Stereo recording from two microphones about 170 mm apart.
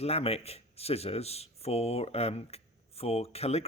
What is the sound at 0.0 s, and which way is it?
Speech, 35° left (ahead or behind).